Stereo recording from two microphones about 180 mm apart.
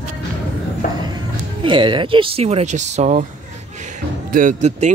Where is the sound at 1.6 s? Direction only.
25° right (ahead or behind).